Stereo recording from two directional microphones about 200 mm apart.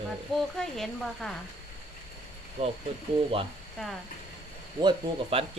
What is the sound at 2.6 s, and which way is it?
Speech, 30° right (ahead or behind).